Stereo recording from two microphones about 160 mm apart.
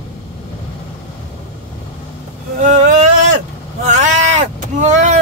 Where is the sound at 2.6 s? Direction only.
50° right (ahead or behind).